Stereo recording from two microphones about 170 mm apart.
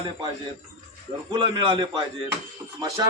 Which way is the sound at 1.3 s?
25° right (ahead or behind).